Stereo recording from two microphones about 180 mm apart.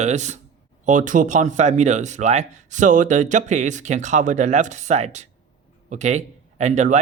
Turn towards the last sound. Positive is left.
turn(degrees=-40)  # may be behind; listen again after turning